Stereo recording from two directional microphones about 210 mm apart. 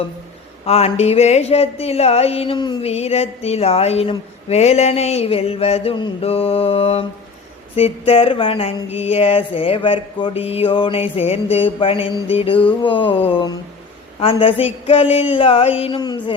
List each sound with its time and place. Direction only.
0.6 s speech: 30° left (ahead or behind)